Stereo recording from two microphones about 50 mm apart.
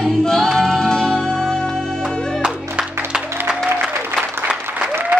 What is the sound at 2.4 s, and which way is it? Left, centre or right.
Music, centre.